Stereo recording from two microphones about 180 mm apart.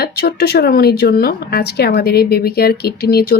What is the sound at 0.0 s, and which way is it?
Speech, 60° left (ahead or behind).